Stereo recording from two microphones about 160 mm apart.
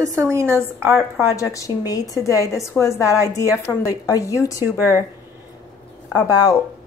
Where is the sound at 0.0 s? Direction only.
20° right (ahead or behind).